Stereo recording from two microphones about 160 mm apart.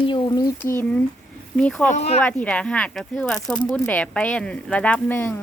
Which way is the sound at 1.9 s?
45° left (ahead or behind).